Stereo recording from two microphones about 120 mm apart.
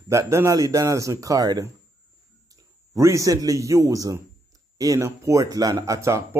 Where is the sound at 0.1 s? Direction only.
25° right (ahead or behind).